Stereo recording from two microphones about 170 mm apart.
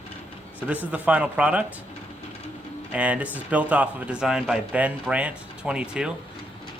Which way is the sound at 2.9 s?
10° right (ahead or behind).